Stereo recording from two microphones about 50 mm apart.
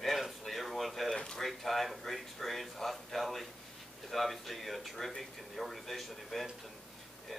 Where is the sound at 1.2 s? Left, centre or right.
Centre.